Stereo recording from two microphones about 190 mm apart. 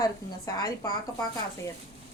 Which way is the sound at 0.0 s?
20° left (ahead or behind).